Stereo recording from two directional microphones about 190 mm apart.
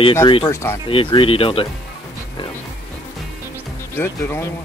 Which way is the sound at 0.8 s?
30° left (ahead or behind).